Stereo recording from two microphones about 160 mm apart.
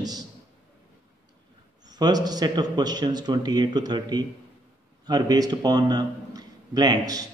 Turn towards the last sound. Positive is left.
turn(degrees=-25)  # may be behind; listen again after turning